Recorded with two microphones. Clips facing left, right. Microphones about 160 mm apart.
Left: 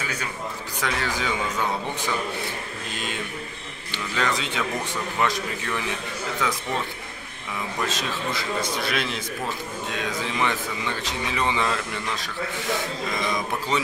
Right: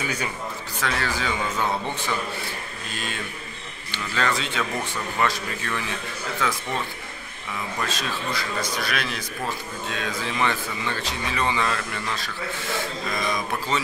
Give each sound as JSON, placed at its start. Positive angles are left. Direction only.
{"t": 0.7, "sound": "speech", "side_deg": 15}
{"t": 3.9, "sound": "speech", "side_deg": 15}
{"t": 7.8, "sound": "speech", "side_deg": 20}
{"t": 10.4, "sound": "speech", "side_deg": 15}